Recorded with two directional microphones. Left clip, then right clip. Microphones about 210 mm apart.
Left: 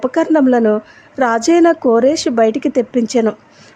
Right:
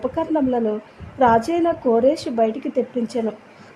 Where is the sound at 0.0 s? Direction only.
25° left (ahead or behind).